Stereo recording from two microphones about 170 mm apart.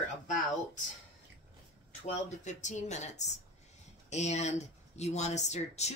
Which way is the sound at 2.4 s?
45° left (ahead or behind).